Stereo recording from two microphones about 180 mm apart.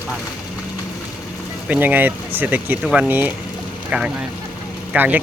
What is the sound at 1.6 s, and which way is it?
Speech, 10° right (ahead or behind).